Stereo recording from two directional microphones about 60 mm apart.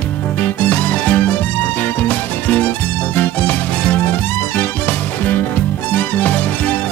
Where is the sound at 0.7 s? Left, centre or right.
Left.